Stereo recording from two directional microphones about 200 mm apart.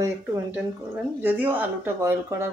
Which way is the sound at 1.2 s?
10° right (ahead or behind).